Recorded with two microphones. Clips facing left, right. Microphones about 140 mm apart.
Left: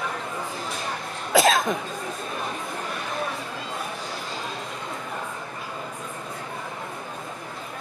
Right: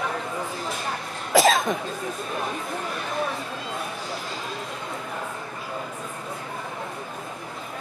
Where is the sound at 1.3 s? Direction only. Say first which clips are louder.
Right 1 dB; centre (ahead or behind).